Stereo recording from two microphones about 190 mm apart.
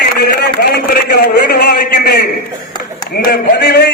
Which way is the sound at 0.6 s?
60° left (ahead or behind).